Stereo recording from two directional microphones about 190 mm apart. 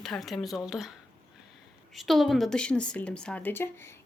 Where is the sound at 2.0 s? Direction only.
Centre (ahead or behind).